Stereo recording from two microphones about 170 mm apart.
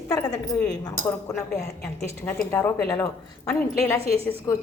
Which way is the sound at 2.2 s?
10° left (ahead or behind).